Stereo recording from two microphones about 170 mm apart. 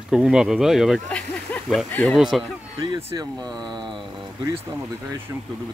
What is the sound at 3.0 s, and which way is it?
Speech, 25° right (ahead or behind).